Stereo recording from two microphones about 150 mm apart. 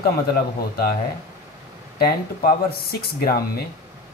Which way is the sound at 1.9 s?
90° left.